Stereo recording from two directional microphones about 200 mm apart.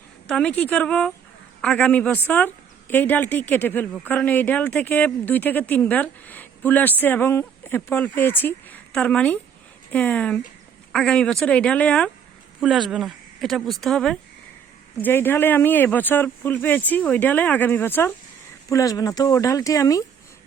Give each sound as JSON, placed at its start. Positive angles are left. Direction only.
{"t": 0.3, "sound": "a woman's voice", "side_deg": 5}